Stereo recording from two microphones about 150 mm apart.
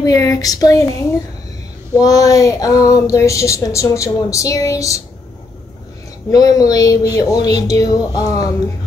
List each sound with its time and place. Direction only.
0.0 s speech: 25° left (ahead or behind)
2.0 s speech: 25° left (ahead or behind)
6.3 s speech: 25° left (ahead or behind)